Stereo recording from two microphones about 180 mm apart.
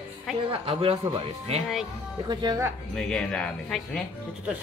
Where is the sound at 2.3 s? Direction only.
20° right (ahead or behind).